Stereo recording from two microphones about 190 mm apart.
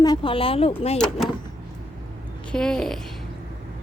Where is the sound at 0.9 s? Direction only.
5° left (ahead or behind).